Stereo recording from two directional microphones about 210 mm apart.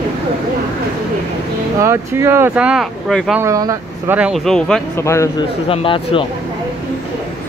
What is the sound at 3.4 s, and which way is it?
Speech, 15° right (ahead or behind).